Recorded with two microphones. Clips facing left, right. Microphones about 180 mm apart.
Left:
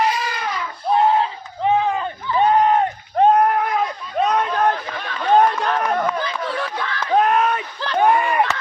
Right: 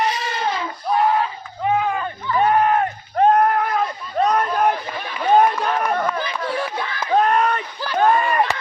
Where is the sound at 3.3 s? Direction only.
5° left (ahead or behind).